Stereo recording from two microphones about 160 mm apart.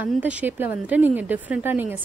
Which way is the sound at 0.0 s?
10° right (ahead or behind).